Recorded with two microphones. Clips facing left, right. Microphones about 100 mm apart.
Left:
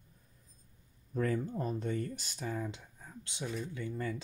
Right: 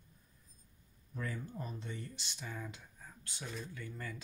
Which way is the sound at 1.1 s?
50° left (ahead or behind).